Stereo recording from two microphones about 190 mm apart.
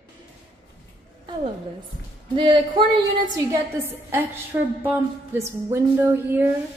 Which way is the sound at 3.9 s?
10° right (ahead or behind).